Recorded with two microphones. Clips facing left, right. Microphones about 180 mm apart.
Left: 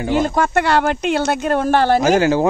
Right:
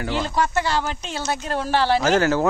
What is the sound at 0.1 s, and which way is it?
Speech, 50° left (ahead or behind).